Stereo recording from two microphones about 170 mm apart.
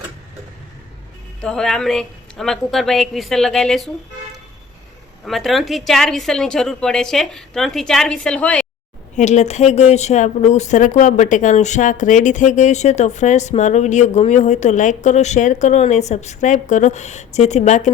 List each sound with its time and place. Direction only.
1.4 s a woman's voice: 5° left (ahead or behind)
5.2 s a woman's voice: centre (ahead or behind)
9.1 s speech: 45° left (ahead or behind)